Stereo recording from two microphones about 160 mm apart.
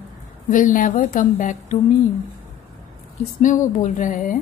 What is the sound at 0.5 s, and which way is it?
A woman's voice, 55° left (ahead or behind).